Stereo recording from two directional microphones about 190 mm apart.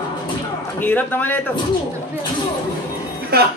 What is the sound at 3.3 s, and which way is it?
Speech, 55° right (ahead or behind).